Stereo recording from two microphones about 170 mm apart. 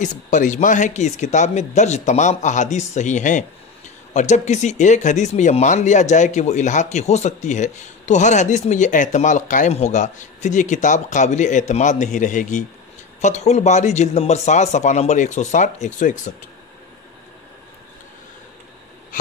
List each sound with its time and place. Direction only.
0.0 s speech: 45° left (ahead or behind)